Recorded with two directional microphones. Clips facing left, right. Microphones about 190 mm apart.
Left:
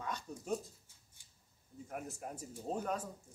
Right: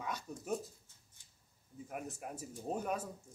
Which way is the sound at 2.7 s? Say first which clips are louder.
Even; 10° right (ahead or behind).